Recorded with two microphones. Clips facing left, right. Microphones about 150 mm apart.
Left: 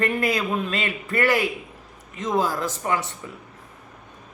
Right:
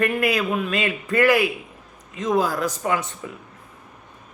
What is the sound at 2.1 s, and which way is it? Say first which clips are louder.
Speech: right 2 dB; 15° right (ahead or behind).